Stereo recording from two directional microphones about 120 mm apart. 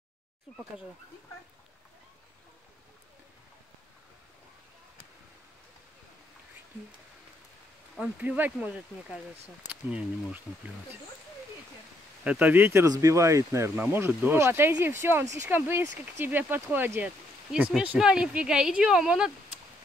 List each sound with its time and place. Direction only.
7.9 s speech: 10° right (ahead or behind)
12.3 s speech: 15° right (ahead or behind)
12.8 s speech: 30° right (ahead or behind); by 19.3 s 5° right (ahead or behind)